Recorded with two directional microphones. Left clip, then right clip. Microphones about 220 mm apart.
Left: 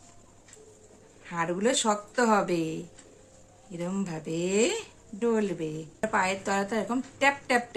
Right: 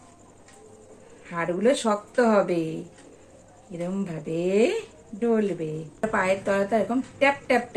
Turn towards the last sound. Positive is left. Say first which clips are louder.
# right 3 dB
turn(degrees=50)  # may be behind; listen again after turning